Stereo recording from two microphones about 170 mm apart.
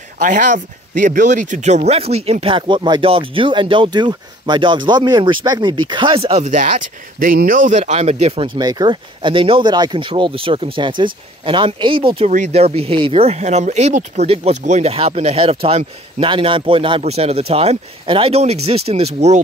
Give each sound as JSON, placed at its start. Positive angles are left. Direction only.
{"t": 0.2, "sound": "speech", "side_deg": -50}
{"t": 8.5, "sound": "speech", "side_deg": -25}
{"t": 12.3, "sound": "speech", "side_deg": -40}